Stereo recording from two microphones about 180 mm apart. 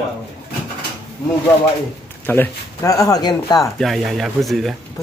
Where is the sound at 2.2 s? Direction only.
15° left (ahead or behind).